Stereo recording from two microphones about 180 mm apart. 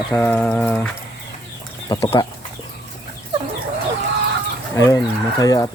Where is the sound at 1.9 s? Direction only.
20° left (ahead or behind).